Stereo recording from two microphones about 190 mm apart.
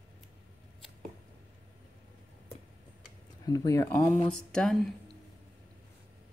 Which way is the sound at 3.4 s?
20° left (ahead or behind).